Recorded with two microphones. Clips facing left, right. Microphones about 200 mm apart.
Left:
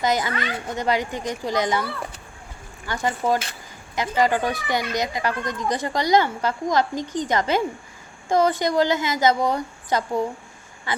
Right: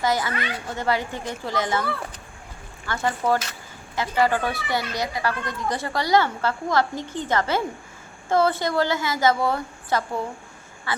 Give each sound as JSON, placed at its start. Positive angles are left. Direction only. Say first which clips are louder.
{"t": 0.0, "sound": "a child's voice", "louder": "left 1 dB", "side_deg": 20}
{"t": 2.8, "sound": "a child's voice", "louder": "even", "side_deg": 15}